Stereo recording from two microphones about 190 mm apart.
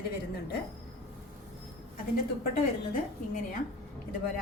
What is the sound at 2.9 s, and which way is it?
Speech, 45° left (ahead or behind).